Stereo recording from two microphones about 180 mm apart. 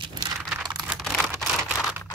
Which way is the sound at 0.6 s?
20° right (ahead or behind).